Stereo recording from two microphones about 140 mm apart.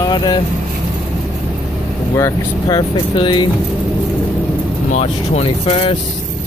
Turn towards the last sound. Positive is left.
turn(degrees=40)  # may be behind; listen again after turning